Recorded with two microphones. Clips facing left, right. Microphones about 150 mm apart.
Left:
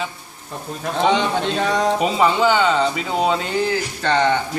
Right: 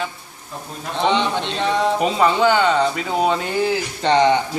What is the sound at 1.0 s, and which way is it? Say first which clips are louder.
Speech: left 1 dB; 40° left (ahead or behind).